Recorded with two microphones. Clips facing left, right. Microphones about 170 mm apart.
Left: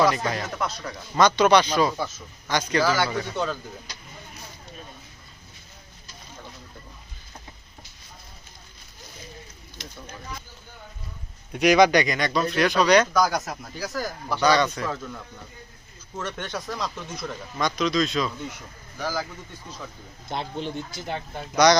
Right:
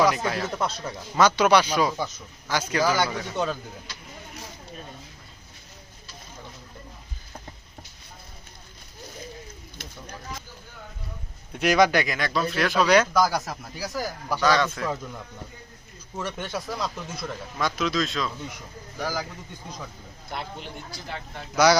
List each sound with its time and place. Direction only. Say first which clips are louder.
0.0 s speech: even; 5° right (ahead or behind)
11.5 s speech: left 3 dB; centre (ahead or behind)
14.4 s speech: left 2 dB; centre (ahead or behind)
16.1 s speech: right 1 dB; 10° right (ahead or behind)
18.9 s speech: left 1 dB; 10° right (ahead or behind)
20.3 s speech: left 6 dB; 25° left (ahead or behind)
21.5 s speech: left 1 dB; 5° right (ahead or behind)